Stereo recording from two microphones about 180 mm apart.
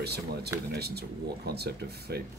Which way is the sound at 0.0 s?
65° right (ahead or behind).